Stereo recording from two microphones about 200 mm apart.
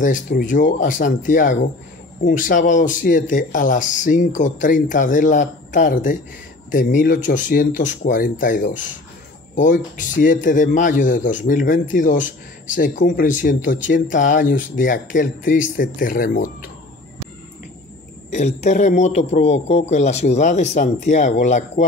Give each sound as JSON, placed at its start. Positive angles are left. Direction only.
{"t": 0.0, "sound": "speech", "side_deg": 40}
{"t": 18.3, "sound": "speech", "side_deg": 35}